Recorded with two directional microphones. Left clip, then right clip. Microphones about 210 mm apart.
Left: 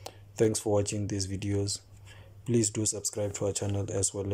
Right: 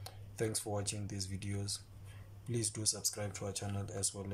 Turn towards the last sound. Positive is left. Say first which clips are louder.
# left 10 dB
turn(degrees=35)  # may be behind; listen again after turning